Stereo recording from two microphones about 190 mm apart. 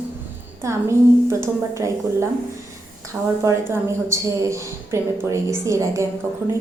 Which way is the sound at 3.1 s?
5° right (ahead or behind).